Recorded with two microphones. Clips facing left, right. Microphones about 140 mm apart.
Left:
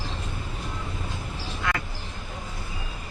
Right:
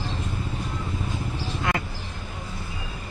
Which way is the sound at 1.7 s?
20° right (ahead or behind).